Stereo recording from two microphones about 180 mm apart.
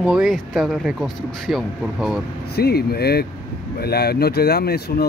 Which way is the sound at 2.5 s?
60° left (ahead or behind).